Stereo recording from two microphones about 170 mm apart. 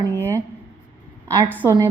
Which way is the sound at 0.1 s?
15° right (ahead or behind).